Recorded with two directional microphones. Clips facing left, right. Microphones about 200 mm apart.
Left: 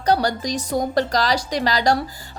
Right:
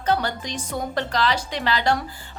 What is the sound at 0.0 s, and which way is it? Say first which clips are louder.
Speech: left 4 dB; 40° left (ahead or behind).